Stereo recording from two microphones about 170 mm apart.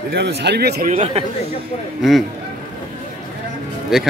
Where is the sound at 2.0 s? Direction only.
Centre (ahead or behind).